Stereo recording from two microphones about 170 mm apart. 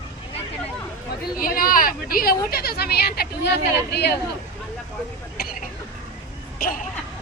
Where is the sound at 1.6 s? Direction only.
55° left (ahead or behind); by 4.1 s 75° left (ahead or behind).